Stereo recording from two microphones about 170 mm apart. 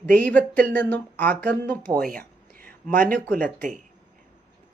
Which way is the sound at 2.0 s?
55° right (ahead or behind).